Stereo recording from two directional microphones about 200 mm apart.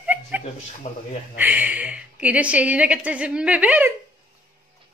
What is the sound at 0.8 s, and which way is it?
Speech, 40° left (ahead or behind).